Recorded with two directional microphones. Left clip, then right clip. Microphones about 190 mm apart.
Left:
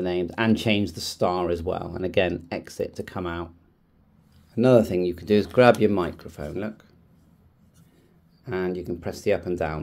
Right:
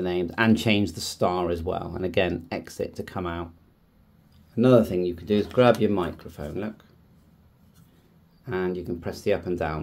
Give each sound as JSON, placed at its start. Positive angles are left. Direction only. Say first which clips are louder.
{"t": 0.0, "sound": "speech", "louder": "right 1 dB", "side_deg": 5}
{"t": 4.6, "sound": "speech", "louder": "left 1 dB", "side_deg": 20}
{"t": 8.5, "sound": "speech", "louder": "even", "side_deg": 15}